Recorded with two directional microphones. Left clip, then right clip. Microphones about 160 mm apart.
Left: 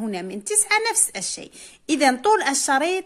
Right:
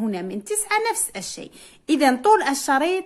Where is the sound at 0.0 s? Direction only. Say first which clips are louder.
Right 1 dB; 15° left (ahead or behind).